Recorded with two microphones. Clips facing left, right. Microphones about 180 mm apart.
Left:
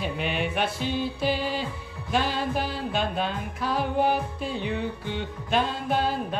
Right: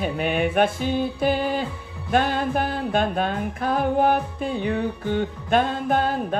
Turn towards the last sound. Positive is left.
turn(degrees=-50)  # may be behind; listen again after turning